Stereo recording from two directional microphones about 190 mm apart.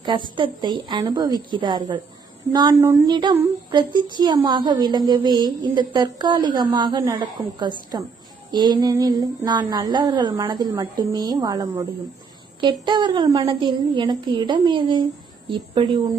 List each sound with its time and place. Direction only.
0.0 s a woman's voice: 25° right (ahead or behind)